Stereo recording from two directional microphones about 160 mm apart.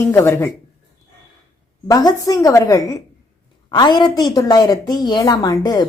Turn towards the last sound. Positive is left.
turn(degrees=25)  # may be behind; listen again after turning